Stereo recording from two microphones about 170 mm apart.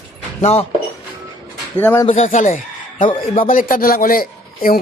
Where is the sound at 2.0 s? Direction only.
40° left (ahead or behind).